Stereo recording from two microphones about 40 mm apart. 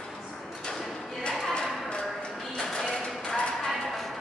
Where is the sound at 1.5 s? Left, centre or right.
Left.